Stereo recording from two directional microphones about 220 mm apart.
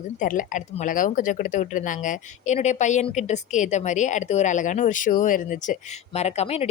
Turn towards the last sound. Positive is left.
turn(degrees=30)  # may be behind; listen again after turning